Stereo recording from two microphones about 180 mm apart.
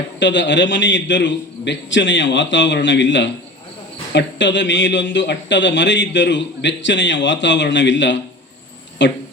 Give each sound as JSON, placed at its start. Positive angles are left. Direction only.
{"t": 0.2, "sound": "speech", "side_deg": 90}